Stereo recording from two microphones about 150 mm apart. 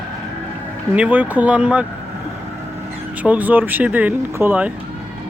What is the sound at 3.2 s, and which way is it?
Speech, 10° right (ahead or behind).